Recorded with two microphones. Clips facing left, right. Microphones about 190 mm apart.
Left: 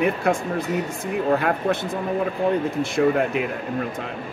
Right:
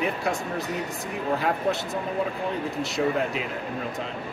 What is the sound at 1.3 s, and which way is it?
Speech, 60° left (ahead or behind).